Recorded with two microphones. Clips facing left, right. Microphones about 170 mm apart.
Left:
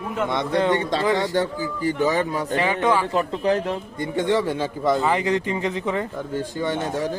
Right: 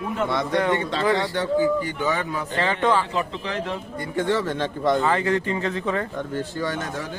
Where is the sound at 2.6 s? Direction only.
10° left (ahead or behind).